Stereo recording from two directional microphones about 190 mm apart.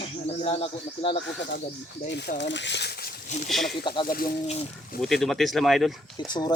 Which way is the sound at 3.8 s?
25° left (ahead or behind).